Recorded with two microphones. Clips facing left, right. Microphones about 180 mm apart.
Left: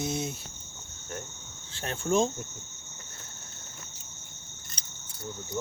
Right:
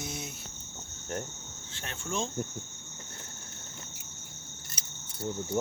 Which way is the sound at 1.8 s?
40° left (ahead or behind).